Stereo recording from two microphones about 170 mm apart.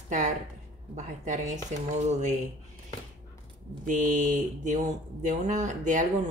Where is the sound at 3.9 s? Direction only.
50° right (ahead or behind).